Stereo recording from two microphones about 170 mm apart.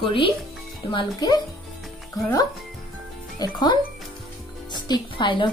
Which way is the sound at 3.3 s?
25° left (ahead or behind).